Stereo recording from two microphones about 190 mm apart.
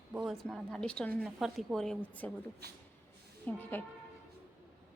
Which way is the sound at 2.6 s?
60° right (ahead or behind).